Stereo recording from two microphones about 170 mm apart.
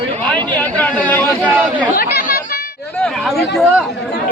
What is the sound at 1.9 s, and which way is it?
Chatter, 60° left (ahead or behind).